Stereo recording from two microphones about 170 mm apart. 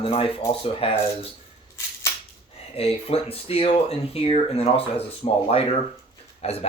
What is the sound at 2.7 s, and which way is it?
Speech, 35° left (ahead or behind).